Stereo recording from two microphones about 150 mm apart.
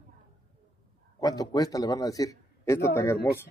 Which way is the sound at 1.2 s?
25° left (ahead or behind).